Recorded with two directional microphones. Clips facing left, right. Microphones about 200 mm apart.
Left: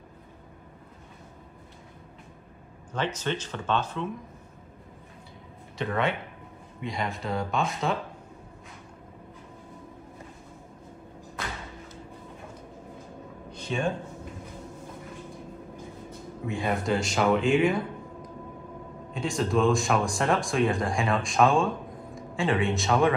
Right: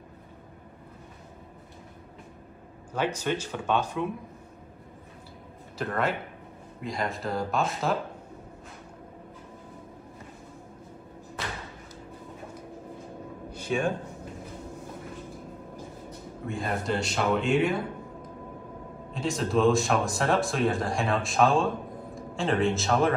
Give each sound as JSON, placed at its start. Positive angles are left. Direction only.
{"t": 2.9, "sound": "speech", "side_deg": -10}
{"t": 5.8, "sound": "speech", "side_deg": 0}
{"t": 13.5, "sound": "a sound", "side_deg": -10}
{"t": 16.4, "sound": "speech", "side_deg": 0}
{"t": 19.1, "sound": "speech", "side_deg": 0}